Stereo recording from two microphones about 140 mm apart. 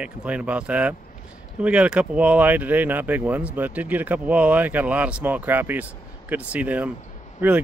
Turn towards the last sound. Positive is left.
turn(degrees=-15)  # may be behind; listen again after turning